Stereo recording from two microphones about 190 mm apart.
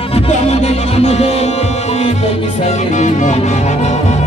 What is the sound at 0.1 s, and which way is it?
Music, 35° left (ahead or behind).